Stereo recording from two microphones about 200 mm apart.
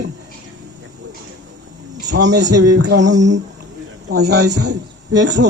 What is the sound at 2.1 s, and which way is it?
Speech, 60° right (ahead or behind).